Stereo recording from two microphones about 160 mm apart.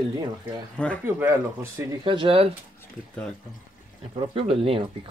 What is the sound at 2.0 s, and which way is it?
Speech, 30° right (ahead or behind).